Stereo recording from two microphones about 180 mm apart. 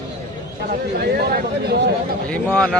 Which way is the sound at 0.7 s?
60° right (ahead or behind).